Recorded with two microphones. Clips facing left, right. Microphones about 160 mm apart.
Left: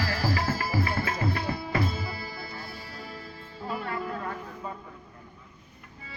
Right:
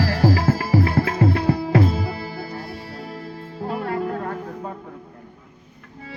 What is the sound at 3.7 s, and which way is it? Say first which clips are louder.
Music: right 7 dB; 55° right (ahead or behind).